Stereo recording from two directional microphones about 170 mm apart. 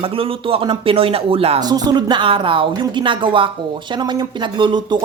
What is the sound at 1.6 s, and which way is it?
Speech, 25° right (ahead or behind).